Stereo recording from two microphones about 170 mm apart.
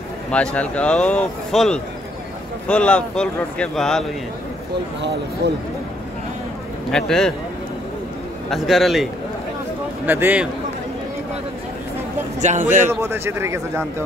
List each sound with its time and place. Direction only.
0.3 s speech: 5° left (ahead or behind)
5.4 s speech: 70° right (ahead or behind)
6.9 s speech: 5° left (ahead or behind)
8.5 s speech: centre (ahead or behind)
10.0 s speech: 10° right (ahead or behind)
12.4 s speech: 45° right (ahead or behind)
13.0 s speech: 15° right (ahead or behind)